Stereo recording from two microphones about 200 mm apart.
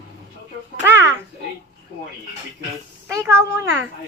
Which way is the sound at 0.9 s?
10° right (ahead or behind).